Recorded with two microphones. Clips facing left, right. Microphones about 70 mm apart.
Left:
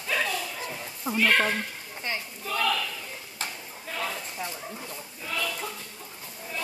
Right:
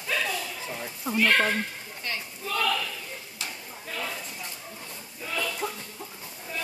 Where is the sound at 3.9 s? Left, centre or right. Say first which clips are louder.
Left 2 dB; centre.